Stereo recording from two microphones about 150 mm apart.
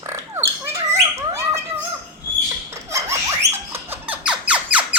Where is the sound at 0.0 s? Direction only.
15° right (ahead or behind).